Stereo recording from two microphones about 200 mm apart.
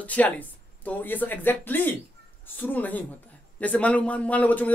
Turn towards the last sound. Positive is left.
turn(degrees=5)  # may be behind; listen again after turning